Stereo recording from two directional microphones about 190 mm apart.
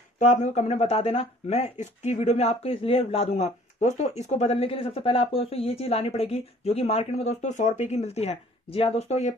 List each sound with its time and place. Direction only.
0.2 s speech: 35° left (ahead or behind)